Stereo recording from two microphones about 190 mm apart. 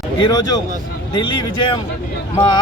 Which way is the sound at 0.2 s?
20° left (ahead or behind).